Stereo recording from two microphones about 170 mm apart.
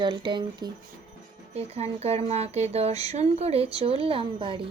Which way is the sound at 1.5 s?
40° right (ahead or behind).